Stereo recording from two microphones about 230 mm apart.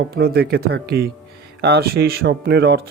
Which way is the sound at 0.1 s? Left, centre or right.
Right.